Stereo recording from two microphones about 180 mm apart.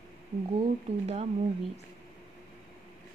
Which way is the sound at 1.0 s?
35° right (ahead or behind).